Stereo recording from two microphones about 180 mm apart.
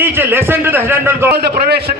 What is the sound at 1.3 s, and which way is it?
Speech, 65° right (ahead or behind).